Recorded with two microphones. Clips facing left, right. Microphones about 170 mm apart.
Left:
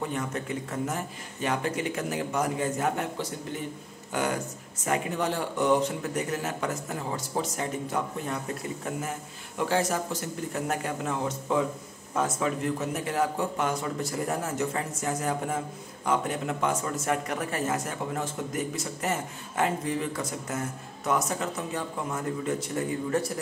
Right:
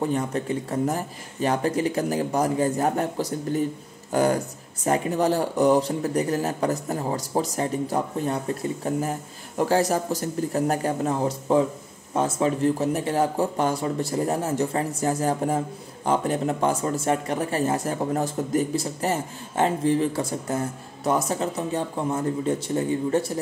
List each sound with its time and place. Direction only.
0.0 s speech: 35° right (ahead or behind)